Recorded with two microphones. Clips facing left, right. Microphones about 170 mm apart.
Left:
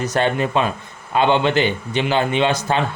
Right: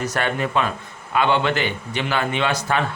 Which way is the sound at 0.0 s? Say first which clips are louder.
Left 4 dB; 20° left (ahead or behind).